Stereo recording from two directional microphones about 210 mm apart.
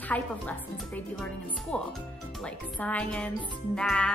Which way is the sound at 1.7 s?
5° left (ahead or behind).